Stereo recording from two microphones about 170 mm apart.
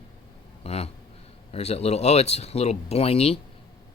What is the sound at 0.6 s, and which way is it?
A man's voice, 35° left (ahead or behind).